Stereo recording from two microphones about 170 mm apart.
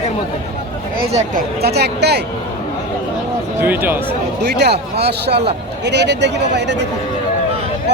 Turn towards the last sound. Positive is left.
turn(degrees=-90)